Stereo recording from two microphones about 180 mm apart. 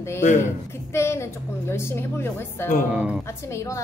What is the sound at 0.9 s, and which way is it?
Speech, 15° left (ahead or behind).